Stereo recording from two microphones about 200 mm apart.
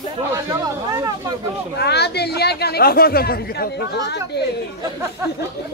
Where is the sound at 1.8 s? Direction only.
55° left (ahead or behind).